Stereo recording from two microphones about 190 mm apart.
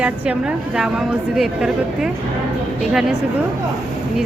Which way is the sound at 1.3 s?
Centre (ahead or behind).